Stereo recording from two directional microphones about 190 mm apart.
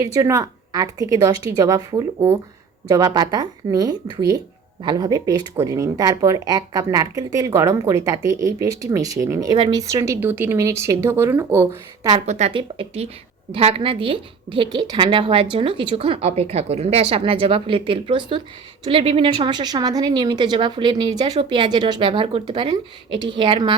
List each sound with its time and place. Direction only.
0.0 s a woman's voice: 15° right (ahead or behind)
12.2 s a woman's voice: 35° right (ahead or behind)